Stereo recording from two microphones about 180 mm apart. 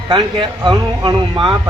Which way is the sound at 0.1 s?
25° right (ahead or behind).